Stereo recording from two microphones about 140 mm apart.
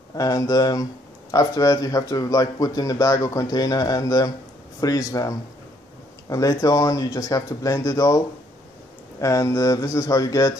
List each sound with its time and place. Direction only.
0.1 s a man's voice: 25° left (ahead or behind)
9.2 s a man's voice: 20° left (ahead or behind)